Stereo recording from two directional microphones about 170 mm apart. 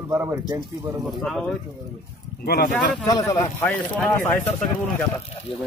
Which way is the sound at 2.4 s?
65° left (ahead or behind).